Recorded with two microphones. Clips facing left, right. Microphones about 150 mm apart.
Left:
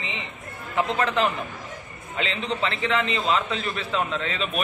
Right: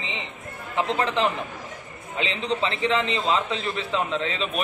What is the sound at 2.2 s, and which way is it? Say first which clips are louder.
A man's voice: right 1 dB; 25° right (ahead or behind).